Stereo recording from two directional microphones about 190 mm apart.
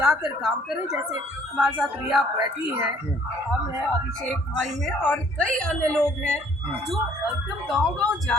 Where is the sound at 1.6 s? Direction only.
5° right (ahead or behind).